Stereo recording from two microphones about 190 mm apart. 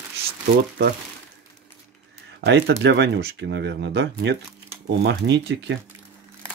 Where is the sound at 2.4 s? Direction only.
65° right (ahead or behind).